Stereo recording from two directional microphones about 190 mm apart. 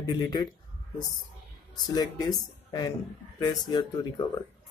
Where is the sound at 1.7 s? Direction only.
20° left (ahead or behind).